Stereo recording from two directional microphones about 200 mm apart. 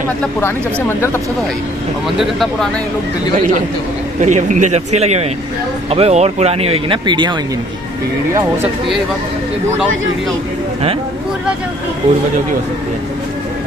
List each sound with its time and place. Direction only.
0.8 s speech: 10° left (ahead or behind)
2.0 s speech: centre (ahead or behind)
4.2 s speech: 35° right (ahead or behind)